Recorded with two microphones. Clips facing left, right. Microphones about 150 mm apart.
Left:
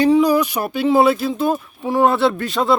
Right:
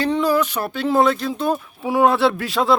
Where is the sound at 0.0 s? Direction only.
15° left (ahead or behind).